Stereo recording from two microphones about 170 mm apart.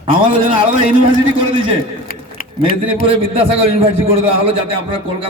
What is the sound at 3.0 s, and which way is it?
A man's voice, 30° right (ahead or behind).